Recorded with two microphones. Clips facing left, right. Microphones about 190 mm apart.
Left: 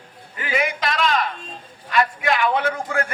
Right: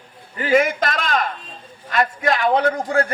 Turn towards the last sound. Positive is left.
turn(degrees=-35)  # may be behind; listen again after turning